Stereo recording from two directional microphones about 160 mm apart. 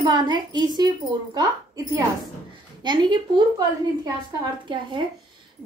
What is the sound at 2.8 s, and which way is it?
A woman's voice, 30° right (ahead or behind).